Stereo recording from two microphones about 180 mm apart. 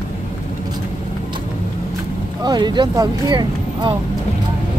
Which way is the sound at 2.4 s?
25° right (ahead or behind).